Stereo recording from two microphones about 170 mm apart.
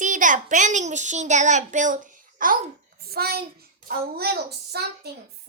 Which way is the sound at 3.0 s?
65° right (ahead or behind).